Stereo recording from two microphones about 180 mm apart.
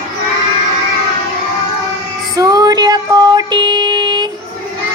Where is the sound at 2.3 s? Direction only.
20° right (ahead or behind).